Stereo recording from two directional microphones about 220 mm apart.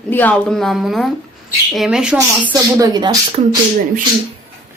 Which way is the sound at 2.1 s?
15° right (ahead or behind).